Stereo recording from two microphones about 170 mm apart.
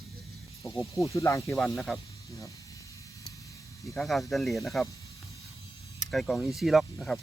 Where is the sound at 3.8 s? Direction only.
Centre (ahead or behind).